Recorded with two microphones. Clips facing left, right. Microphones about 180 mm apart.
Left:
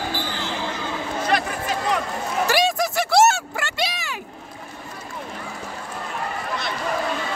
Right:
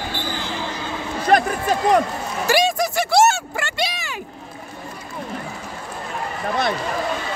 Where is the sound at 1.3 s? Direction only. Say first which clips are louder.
Right 8 dB; 45° right (ahead or behind).